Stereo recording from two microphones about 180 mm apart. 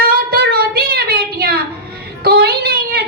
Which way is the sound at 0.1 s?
55° right (ahead or behind).